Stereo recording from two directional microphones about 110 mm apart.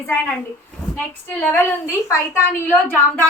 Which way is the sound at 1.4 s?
20° left (ahead or behind).